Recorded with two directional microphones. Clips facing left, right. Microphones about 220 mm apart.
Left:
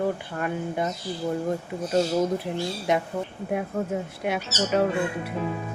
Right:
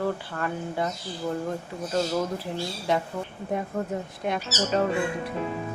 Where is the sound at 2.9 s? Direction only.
20° left (ahead or behind).